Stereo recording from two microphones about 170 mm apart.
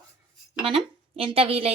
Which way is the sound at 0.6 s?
30° right (ahead or behind).